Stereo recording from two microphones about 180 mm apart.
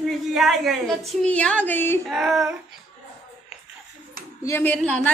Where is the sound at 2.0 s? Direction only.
Centre (ahead or behind).